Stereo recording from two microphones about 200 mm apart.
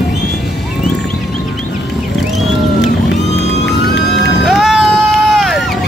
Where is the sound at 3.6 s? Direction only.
60° left (ahead or behind).